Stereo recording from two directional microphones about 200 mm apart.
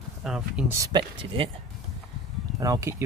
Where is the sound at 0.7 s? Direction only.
20° right (ahead or behind).